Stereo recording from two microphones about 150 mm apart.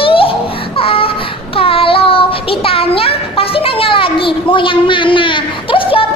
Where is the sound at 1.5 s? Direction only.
35° left (ahead or behind).